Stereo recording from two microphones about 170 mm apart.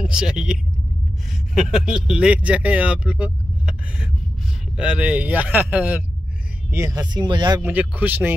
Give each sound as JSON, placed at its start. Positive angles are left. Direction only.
{"t": 0.0, "sound": "speech", "side_deg": -5}
{"t": 6.7, "sound": "speech", "side_deg": -20}
{"t": 7.6, "sound": "speech", "side_deg": -10}